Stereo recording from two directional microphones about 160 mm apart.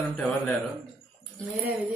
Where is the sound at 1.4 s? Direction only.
10° right (ahead or behind).